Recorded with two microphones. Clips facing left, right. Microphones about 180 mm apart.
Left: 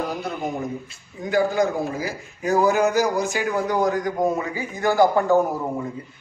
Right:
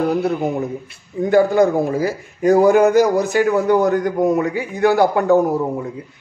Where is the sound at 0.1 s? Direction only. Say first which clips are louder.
Right 9 dB; 65° right (ahead or behind).